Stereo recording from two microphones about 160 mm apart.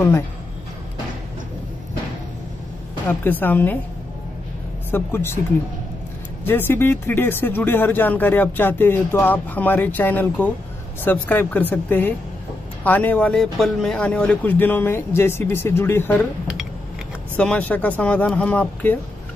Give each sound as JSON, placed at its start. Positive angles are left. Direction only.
{"t": 3.1, "sound": "speech", "side_deg": 10}
{"t": 4.9, "sound": "speech", "side_deg": 15}
{"t": 6.4, "sound": "speech", "side_deg": 15}
{"t": 17.4, "sound": "speech", "side_deg": 10}